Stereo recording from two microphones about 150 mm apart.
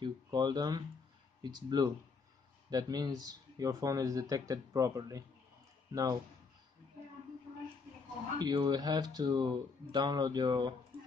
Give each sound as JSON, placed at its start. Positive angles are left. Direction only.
{"t": 0.0, "sound": "speech", "side_deg": -30}
{"t": 8.4, "sound": "speech", "side_deg": -30}